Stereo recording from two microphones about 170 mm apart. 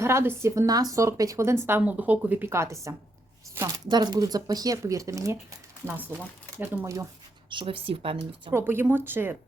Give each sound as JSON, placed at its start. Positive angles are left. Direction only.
{"t": 0.0, "sound": "speech", "side_deg": -15}
{"t": 3.8, "sound": "speech", "side_deg": -25}
{"t": 7.5, "sound": "speech", "side_deg": -30}
{"t": 8.5, "sound": "speech", "side_deg": -15}